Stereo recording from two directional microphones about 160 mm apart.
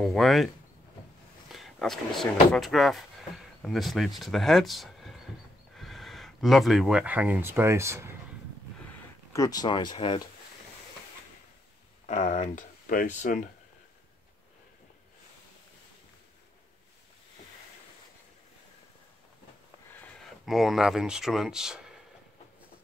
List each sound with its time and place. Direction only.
0.0 s speech: centre (ahead or behind)
1.5 s speech: centre (ahead or behind); by 8.2 s 15° right (ahead or behind)
9.3 s speech: 20° left (ahead or behind)
12.1 s speech: 45° left (ahead or behind)
20.4 s speech: centre (ahead or behind)